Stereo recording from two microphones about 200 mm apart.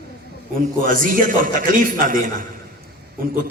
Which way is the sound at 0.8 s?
45° right (ahead or behind).